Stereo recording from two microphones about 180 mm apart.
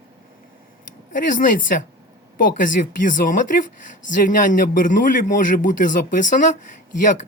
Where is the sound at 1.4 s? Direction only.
50° left (ahead or behind).